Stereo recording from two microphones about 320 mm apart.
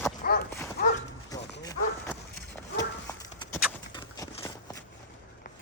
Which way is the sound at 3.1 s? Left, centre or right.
Centre.